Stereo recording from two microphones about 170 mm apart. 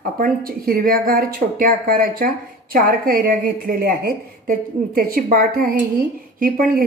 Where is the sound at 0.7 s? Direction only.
60° right (ahead or behind).